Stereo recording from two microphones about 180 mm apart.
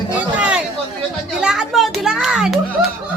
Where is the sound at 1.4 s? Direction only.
5° right (ahead or behind).